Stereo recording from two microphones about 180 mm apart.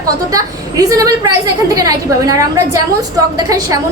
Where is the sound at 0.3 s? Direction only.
20° right (ahead or behind).